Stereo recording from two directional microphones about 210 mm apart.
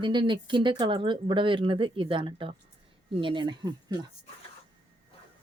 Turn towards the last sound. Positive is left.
turn(degrees=-20)  # may be behind; listen again after turning